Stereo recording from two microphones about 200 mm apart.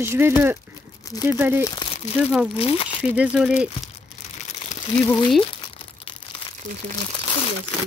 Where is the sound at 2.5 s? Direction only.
30° left (ahead or behind).